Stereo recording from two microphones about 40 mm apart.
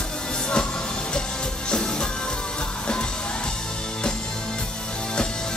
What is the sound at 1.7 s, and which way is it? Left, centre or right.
Music, left.